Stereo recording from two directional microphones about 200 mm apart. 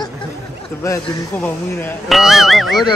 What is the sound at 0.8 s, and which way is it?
Speech, 15° left (ahead or behind).